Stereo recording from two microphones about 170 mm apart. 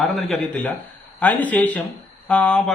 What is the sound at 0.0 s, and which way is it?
A man's voice, centre (ahead or behind).